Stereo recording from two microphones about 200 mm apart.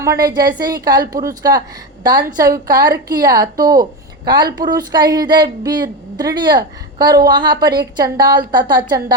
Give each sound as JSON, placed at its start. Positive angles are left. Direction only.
{"t": 0.0, "sound": "a woman's voice", "side_deg": -15}